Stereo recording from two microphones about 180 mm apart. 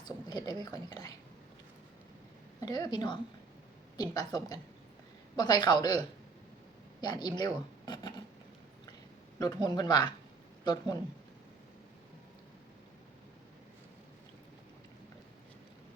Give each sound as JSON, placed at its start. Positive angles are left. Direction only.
{"t": 0.0, "sound": "speech", "side_deg": 20}
{"t": 2.6, "sound": "a woman's voice", "side_deg": 20}
{"t": 9.6, "sound": "a woman's voice", "side_deg": 20}